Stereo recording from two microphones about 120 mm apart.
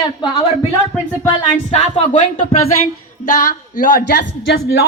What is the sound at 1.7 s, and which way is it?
Speech, 65° left (ahead or behind).